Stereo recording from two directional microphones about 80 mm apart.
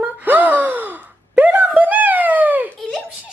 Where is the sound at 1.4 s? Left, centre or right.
Centre.